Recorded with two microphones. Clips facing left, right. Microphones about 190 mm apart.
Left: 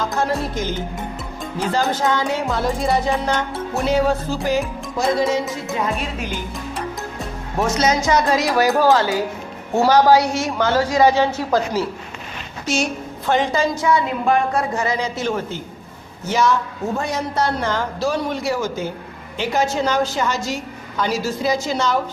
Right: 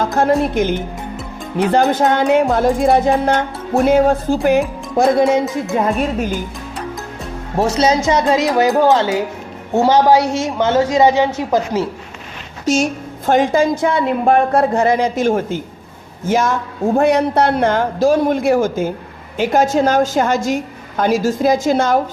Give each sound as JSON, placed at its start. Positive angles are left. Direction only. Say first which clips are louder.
{"t": 0.0, "sound": "music", "louder": "right 7 dB", "side_deg": -55}
{"t": 5.7, "sound": "speech", "louder": "right 7 dB", "side_deg": -45}
{"t": 7.5, "sound": "a woman's voice", "louder": "right 4 dB", "side_deg": -30}
{"t": 12.6, "sound": "music", "louder": "right 6 dB", "side_deg": -45}
{"t": 15.2, "sound": "speech", "louder": "right 7 dB", "side_deg": -45}